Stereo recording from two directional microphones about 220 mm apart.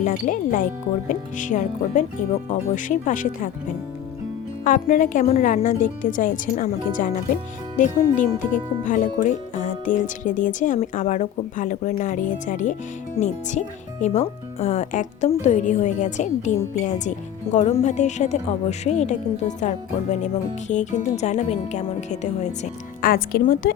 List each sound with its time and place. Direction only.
0.0 s speech: 35° left (ahead or behind)
4.6 s speech: 35° left (ahead or behind)